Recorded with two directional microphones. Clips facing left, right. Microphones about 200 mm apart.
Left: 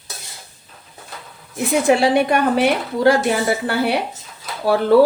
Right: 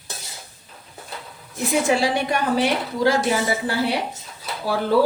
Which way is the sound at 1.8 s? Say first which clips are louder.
Left 9 dB; 60° left (ahead or behind).